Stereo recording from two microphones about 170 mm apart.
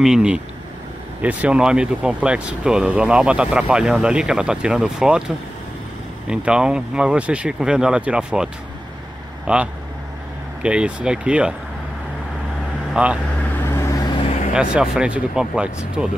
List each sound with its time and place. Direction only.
0.0 s speech: 5° right (ahead or behind)
6.2 s speech: 5° right (ahead or behind)
9.5 s speech: 5° right (ahead or behind)
12.9 s speech: 5° right (ahead or behind)
13.7 s vehicle: 20° left (ahead or behind)
14.5 s speech: 5° right (ahead or behind)